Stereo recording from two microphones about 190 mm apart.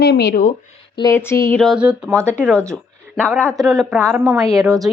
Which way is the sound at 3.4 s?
Centre (ahead or behind).